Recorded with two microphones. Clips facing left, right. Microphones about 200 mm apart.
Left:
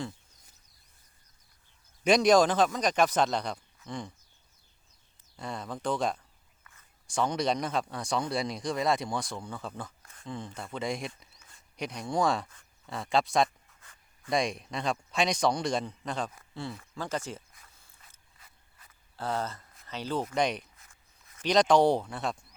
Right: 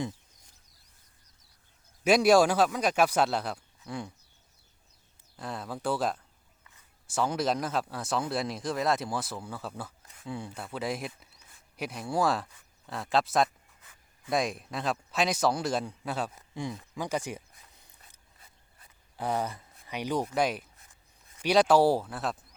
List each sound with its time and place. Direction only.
2.0 s speech: 5° right (ahead or behind)
5.4 s speech: 5° right (ahead or behind)
16.3 s a sound: 15° right (ahead or behind)
18.3 s mechanisms: 30° right (ahead or behind)
19.1 s speech: 15° right (ahead or behind)